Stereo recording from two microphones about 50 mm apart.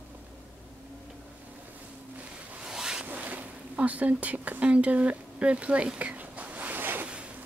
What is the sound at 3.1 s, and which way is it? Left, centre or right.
Speech, right.